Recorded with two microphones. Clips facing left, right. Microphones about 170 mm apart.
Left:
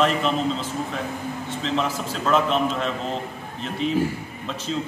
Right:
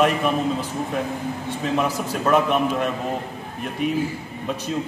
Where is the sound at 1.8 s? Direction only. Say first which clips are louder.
Right 2 dB; 10° right (ahead or behind).